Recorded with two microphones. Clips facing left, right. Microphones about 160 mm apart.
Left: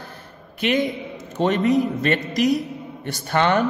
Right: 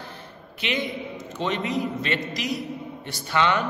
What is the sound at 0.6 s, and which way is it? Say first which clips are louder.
A man's voice: left 7 dB; 45° left (ahead or behind).